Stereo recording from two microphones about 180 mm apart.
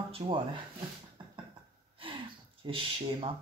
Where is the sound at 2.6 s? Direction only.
25° right (ahead or behind).